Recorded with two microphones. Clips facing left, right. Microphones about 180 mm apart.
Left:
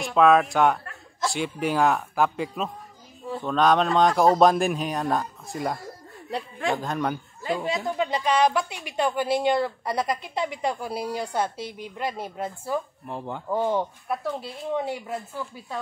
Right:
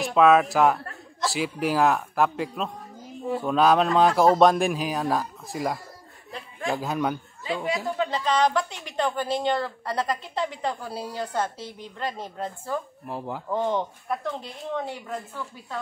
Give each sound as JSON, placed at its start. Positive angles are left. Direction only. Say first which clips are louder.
{"t": 0.0, "sound": "speech", "louder": "even", "side_deg": 0}
{"t": 7.6, "sound": "speech", "louder": "right 2 dB", "side_deg": 25}
{"t": 8.1, "sound": "a woman's voice", "louder": "left 1 dB", "side_deg": 10}
{"t": 13.0, "sound": "speech", "louder": "right 1 dB", "side_deg": -5}
{"t": 13.5, "sound": "a woman's voice", "louder": "left 1 dB", "side_deg": 10}